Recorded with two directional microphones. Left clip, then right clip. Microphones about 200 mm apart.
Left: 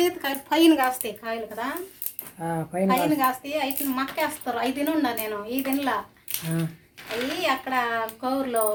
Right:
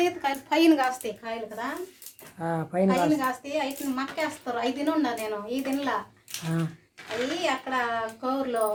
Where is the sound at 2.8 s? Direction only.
15° left (ahead or behind).